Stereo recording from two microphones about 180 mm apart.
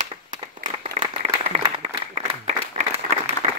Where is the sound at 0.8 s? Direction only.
35° right (ahead or behind).